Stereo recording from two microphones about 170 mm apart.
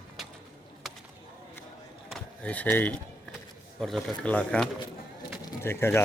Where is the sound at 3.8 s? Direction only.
Centre (ahead or behind).